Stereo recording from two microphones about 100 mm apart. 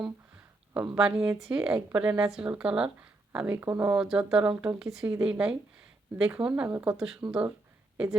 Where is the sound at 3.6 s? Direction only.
25° right (ahead or behind).